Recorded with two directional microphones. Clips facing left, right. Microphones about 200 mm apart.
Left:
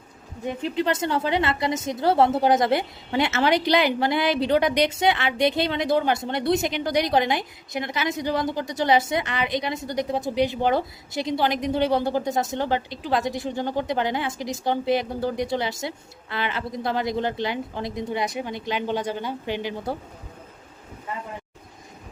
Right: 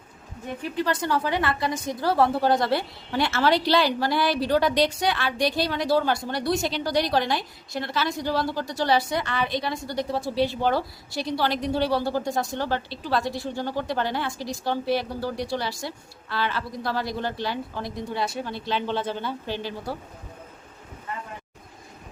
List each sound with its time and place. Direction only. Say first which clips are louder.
0.6 s a woman's voice: left 2 dB; 20° left (ahead or behind)